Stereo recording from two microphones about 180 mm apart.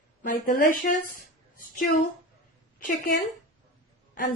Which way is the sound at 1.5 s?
50° left (ahead or behind).